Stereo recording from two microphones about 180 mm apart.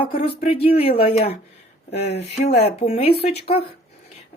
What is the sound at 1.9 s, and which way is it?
Speech, 65° left (ahead or behind).